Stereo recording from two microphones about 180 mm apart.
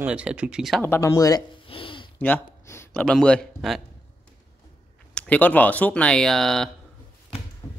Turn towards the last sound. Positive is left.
turn(degrees=15)  # may be behind; listen again after turning